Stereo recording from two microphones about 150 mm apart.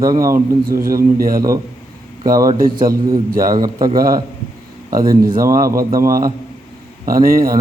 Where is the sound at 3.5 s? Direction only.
30° right (ahead or behind).